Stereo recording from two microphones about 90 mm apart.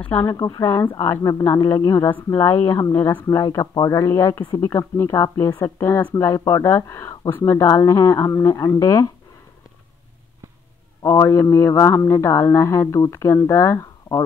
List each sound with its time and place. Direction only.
0.2 s a man's voice: 40° left (ahead or behind)
11.0 s a man's voice: 35° left (ahead or behind)